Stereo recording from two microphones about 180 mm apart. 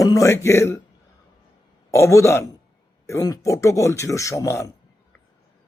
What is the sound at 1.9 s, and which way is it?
A man's voice, 15° left (ahead or behind).